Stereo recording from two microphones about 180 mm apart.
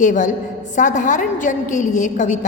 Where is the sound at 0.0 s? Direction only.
45° left (ahead or behind).